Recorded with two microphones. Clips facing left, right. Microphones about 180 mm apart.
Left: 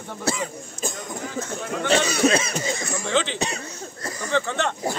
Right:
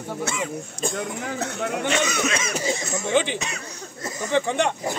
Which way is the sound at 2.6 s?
25° right (ahead or behind).